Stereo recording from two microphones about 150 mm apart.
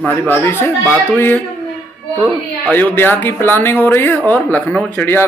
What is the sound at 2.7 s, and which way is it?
A man's voice, 10° left (ahead or behind).